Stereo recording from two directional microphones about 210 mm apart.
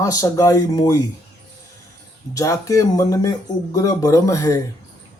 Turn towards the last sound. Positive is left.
turn(degrees=15)  # may be behind; listen again after turning